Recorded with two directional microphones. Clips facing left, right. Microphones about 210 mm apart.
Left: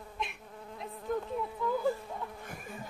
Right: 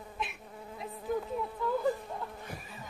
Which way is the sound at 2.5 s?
50° left (ahead or behind).